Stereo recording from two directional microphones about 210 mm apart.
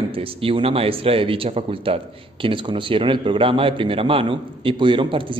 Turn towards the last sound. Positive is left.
turn(degrees=-25)  # may be behind; listen again after turning